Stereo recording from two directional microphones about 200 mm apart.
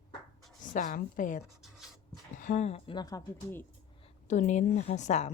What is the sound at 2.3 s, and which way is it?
Speech, 40° left (ahead or behind).